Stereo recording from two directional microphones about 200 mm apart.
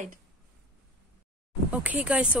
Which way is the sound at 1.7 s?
5° right (ahead or behind).